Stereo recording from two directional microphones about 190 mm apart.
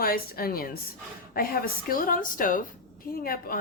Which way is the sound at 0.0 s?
50° left (ahead or behind).